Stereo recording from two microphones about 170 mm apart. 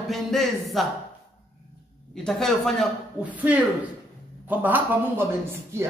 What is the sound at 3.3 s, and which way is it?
A man's voice, 10° right (ahead or behind).